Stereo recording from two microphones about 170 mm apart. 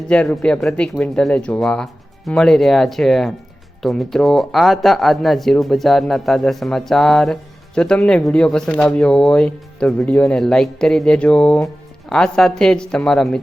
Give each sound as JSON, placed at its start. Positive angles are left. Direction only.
{"t": 0.1, "sound": "speech", "side_deg": 5}